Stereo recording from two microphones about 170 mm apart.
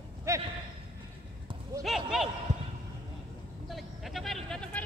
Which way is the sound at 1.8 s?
Centre (ahead or behind).